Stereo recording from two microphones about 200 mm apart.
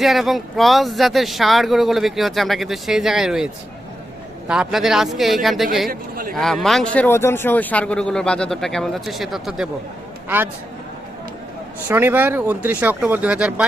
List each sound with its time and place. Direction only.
0.0 s speech: centre (ahead or behind)
5.9 s a sound: 45° right (ahead or behind)
6.3 s speech: centre (ahead or behind)
11.9 s speech: 10° right (ahead or behind)